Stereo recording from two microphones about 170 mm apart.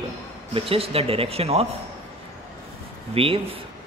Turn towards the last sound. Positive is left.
turn(degrees=-35)  # may be behind; listen again after turning